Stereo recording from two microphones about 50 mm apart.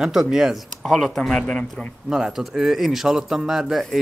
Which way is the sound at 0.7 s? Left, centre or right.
Centre.